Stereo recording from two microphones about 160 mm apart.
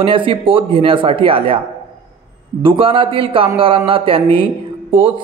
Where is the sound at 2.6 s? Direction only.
35° right (ahead or behind).